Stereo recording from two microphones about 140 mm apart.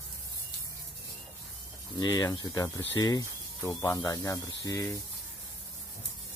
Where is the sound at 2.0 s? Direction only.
30° left (ahead or behind).